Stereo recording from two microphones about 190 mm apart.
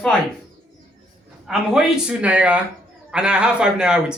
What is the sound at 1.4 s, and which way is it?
A man's voice, 5° right (ahead or behind).